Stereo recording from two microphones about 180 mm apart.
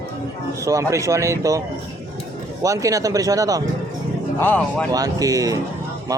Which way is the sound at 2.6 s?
20° right (ahead or behind).